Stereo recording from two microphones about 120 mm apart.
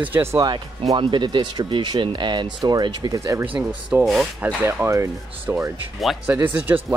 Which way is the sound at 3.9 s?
20° right (ahead or behind).